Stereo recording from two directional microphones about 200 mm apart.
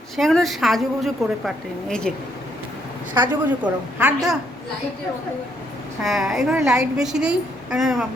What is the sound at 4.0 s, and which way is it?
Speech, 5° right (ahead or behind).